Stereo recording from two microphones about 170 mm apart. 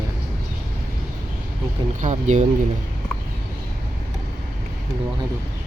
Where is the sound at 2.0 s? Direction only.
45° right (ahead or behind).